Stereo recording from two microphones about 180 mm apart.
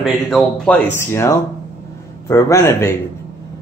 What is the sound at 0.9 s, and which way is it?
A man's voice, 15° left (ahead or behind).